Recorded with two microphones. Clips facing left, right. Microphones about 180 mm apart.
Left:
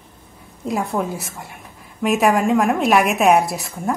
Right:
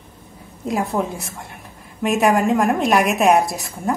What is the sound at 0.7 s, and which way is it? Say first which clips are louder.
A woman's voice: even; centre (ahead or behind).